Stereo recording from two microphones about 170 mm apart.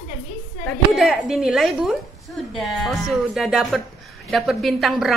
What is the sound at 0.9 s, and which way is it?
Speech, 5° right (ahead or behind).